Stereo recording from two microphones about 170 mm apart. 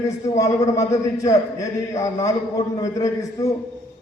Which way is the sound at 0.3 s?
20° left (ahead or behind).